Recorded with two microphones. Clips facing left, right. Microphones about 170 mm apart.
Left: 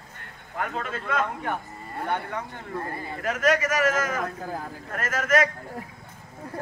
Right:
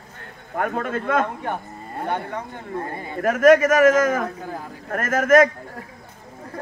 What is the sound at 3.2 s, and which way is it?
A man's voice, 50° right (ahead or behind).